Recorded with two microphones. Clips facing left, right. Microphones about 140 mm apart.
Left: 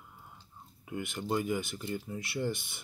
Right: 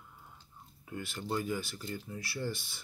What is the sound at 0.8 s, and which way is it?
Speech, 15° left (ahead or behind).